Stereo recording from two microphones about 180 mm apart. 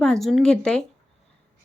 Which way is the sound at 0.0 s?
Centre (ahead or behind).